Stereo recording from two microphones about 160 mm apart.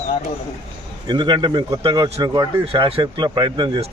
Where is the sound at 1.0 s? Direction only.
30° right (ahead or behind).